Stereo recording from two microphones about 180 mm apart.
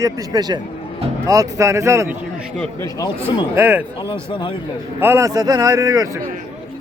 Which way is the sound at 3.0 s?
25° left (ahead or behind).